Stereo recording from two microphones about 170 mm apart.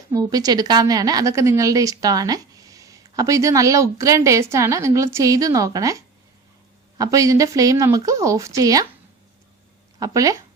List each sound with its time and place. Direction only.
0.1 s a woman's voice: 20° right (ahead or behind)
7.0 s a woman's voice: 20° right (ahead or behind)
10.0 s a woman's voice: 20° right (ahead or behind)